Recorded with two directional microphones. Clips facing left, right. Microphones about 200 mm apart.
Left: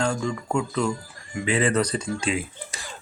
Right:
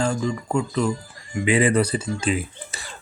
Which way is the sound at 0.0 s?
5° right (ahead or behind).